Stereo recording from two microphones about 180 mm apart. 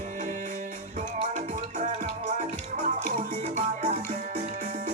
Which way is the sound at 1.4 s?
40° right (ahead or behind).